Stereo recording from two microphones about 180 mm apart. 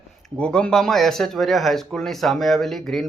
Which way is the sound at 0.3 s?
5° left (ahead or behind).